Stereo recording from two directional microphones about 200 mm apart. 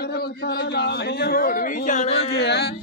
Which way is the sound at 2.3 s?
55° left (ahead or behind).